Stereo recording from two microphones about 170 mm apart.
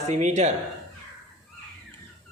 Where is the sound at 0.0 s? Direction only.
45° right (ahead or behind).